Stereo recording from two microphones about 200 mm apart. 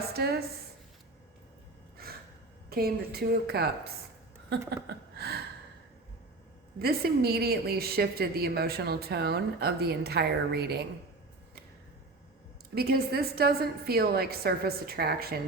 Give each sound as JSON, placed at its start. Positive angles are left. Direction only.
{"t": 0.1, "sound": "a woman's voice", "side_deg": -50}
{"t": 2.6, "sound": "a woman's voice", "side_deg": -50}
{"t": 4.5, "sound": "a sound", "side_deg": -55}
{"t": 6.7, "sound": "a woman's voice", "side_deg": -50}
{"t": 12.7, "sound": "a woman's voice", "side_deg": -50}